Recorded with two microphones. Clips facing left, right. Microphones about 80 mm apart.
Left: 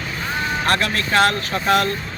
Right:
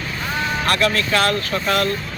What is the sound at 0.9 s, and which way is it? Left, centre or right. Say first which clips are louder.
Speech: left 1 dB; left.